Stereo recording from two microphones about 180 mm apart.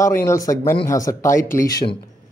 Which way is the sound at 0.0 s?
15° left (ahead or behind).